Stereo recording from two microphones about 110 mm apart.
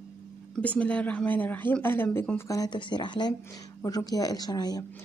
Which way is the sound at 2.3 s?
30° left (ahead or behind).